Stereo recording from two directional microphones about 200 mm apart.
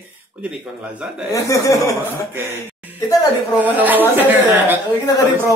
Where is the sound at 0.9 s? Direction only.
5° right (ahead or behind).